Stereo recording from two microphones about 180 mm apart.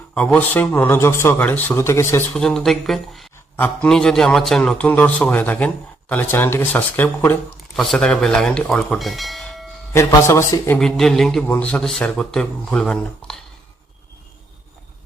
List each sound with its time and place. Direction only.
0.1 s a man's voice: 5° left (ahead or behind)
2.4 s a man's voice: centre (ahead or behind)
9.9 s a man's voice: 15° left (ahead or behind)
10.8 s a man's voice: 5° left (ahead or behind)